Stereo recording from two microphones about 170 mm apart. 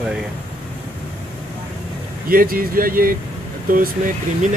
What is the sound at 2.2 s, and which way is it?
Speech, 60° right (ahead or behind).